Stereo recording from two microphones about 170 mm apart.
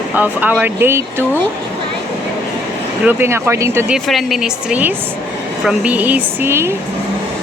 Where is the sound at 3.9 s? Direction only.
Centre (ahead or behind).